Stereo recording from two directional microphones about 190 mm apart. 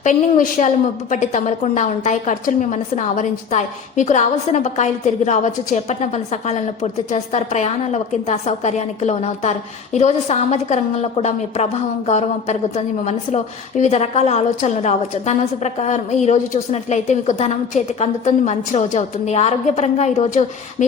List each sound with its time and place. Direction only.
0.0 s a woman's voice: 40° left (ahead or behind)